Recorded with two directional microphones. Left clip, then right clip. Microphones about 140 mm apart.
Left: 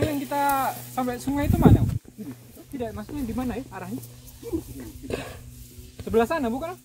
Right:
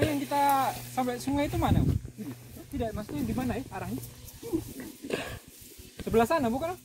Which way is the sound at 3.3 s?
75° right (ahead or behind).